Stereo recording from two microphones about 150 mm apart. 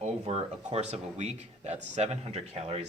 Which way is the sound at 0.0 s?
45° right (ahead or behind).